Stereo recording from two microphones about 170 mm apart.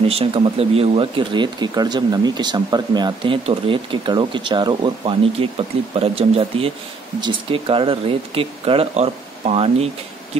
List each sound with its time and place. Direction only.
0.1 s speech: 35° right (ahead or behind)